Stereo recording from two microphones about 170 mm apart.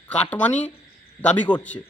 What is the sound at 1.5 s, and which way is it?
Speech, 25° left (ahead or behind).